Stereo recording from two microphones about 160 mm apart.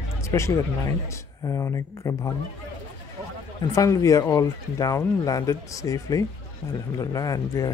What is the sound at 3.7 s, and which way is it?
Speech, 20° left (ahead or behind).